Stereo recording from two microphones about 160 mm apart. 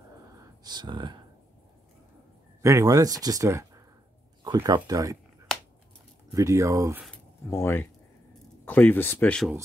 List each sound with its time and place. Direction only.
0.7 s speech: 25° right (ahead or behind)
2.6 s speech: 20° right (ahead or behind)
6.3 s speech: 20° right (ahead or behind)
7.4 s speech: 15° left (ahead or behind)